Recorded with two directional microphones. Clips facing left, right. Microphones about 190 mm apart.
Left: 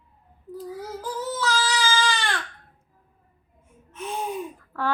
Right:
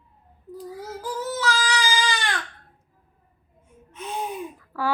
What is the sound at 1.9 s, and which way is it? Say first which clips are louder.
Baby cry: left 1 dB; 15° right (ahead or behind).